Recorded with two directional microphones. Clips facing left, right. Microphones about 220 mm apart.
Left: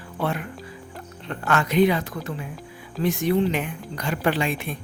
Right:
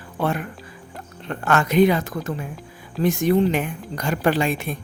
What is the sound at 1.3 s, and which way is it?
Speech, 45° right (ahead or behind).